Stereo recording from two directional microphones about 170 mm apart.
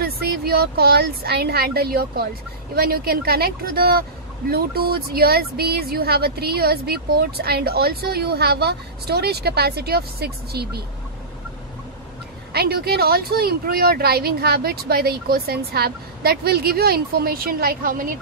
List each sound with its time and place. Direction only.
0.0 s speech: 65° right (ahead or behind)
12.5 s speech: 65° right (ahead or behind)